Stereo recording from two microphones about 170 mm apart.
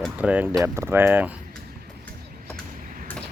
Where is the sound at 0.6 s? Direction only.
15° right (ahead or behind).